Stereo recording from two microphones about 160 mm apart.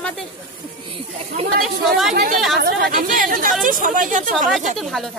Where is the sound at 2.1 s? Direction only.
65° right (ahead or behind).